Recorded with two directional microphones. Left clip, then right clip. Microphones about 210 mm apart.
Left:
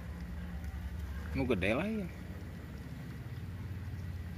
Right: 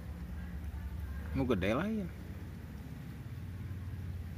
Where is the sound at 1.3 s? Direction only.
5° right (ahead or behind).